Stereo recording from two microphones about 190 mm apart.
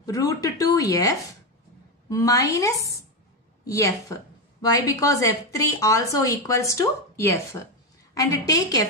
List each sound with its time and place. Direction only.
0.0 s a woman's voice: 15° left (ahead or behind)